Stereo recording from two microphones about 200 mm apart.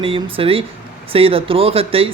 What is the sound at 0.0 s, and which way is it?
Speech, 25° right (ahead or behind).